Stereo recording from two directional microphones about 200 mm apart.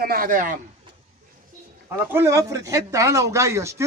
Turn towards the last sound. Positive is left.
turn(degrees=-15)  # may be behind; listen again after turning